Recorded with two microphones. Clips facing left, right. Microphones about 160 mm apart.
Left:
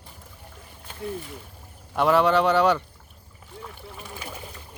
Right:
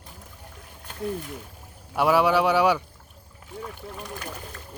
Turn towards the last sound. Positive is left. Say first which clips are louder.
# right 2 dB
turn(degrees=10)  # may be behind; listen again after turning